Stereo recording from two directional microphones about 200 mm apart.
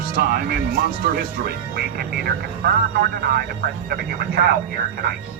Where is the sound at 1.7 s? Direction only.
50° right (ahead or behind).